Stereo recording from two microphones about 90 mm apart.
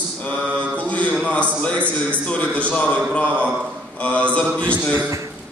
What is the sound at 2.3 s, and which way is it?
A man's voice, 15° left (ahead or behind).